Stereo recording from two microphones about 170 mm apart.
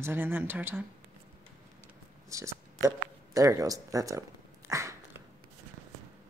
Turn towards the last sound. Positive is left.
turn(degrees=-15)  # may be behind; listen again after turning